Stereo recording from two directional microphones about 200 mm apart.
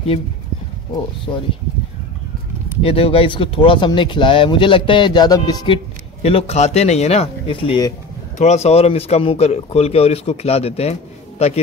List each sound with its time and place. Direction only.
2.8 s speech: 30° left (ahead or behind)
6.2 s speech: 30° left (ahead or behind)